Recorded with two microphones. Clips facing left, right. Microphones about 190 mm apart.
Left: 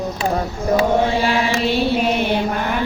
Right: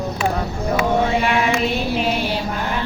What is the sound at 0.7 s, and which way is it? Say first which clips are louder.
Chant: left 2 dB; 30° left (ahead or behind).